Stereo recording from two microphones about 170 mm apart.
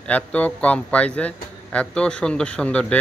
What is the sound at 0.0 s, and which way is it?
Speech, 10° left (ahead or behind).